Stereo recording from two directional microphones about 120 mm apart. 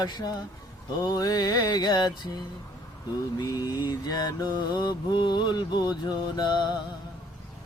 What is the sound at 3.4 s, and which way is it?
Mantra, 30° left (ahead or behind).